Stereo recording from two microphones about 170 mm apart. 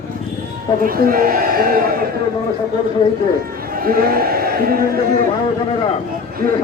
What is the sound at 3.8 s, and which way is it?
Speech, 60° right (ahead or behind).